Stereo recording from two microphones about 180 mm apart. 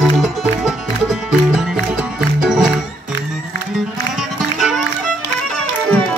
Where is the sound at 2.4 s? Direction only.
5° right (ahead or behind).